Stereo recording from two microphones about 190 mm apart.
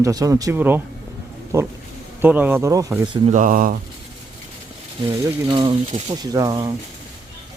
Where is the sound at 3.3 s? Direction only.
45° right (ahead or behind).